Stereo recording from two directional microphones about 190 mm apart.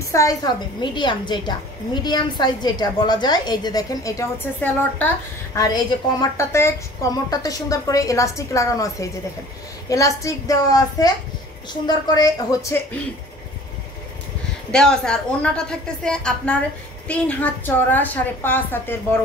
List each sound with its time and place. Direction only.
0.1 s a woman's voice: 15° left (ahead or behind)
14.7 s a woman's voice: 5° left (ahead or behind)